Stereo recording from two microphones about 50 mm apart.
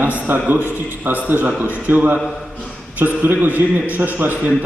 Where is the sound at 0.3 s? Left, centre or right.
Right.